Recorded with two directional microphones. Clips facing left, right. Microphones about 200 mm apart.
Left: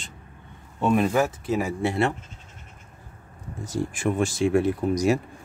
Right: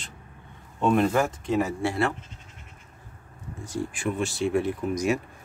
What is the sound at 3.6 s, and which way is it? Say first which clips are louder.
Speech: left 3 dB; 40° left (ahead or behind).